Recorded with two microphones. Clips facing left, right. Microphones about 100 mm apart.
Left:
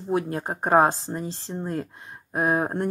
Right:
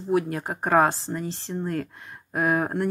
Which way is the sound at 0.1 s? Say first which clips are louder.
Right 1 dB; 30° left (ahead or behind).